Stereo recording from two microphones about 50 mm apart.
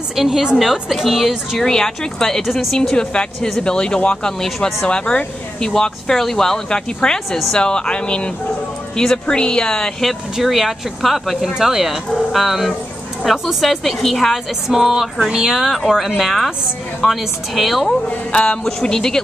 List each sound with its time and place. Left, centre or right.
0.1 s a woman's voice: centre
1.6 s a woman's voice: centre
2.9 s speech: centre
4.4 s speech: centre
4.8 s speech: centre
10.3 s a woman's voice: centre
18.3 s speech: left
18.6 s speech: centre